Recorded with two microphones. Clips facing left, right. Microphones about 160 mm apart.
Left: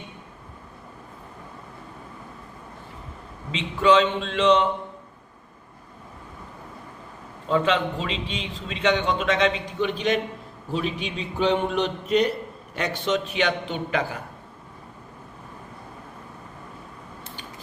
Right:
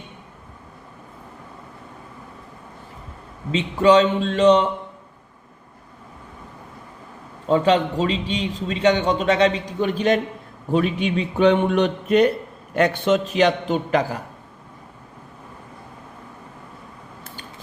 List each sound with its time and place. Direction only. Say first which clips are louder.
3.5 s a man's voice: right 4 dB; 40° right (ahead or behind)
7.4 s a man's voice: right 5 dB; 40° right (ahead or behind)
10.7 s a man's voice: right 7 dB; 55° right (ahead or behind); by 14.2 s 40° right (ahead or behind)